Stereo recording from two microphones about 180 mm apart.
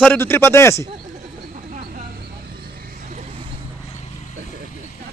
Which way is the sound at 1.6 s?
50° right (ahead or behind).